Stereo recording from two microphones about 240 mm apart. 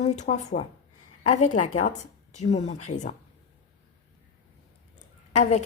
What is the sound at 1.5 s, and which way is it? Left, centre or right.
Speech, left.